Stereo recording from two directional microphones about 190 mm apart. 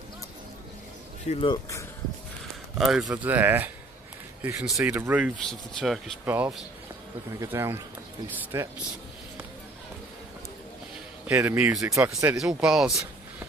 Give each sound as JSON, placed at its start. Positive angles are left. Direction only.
{"t": 1.3, "sound": "speech", "side_deg": 25}
{"t": 2.8, "sound": "speech", "side_deg": 0}
{"t": 11.2, "sound": "speech", "side_deg": -10}
{"t": 12.4, "sound": "speech", "side_deg": -5}